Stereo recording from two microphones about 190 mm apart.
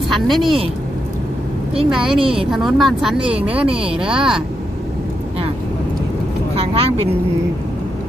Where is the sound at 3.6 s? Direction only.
30° right (ahead or behind).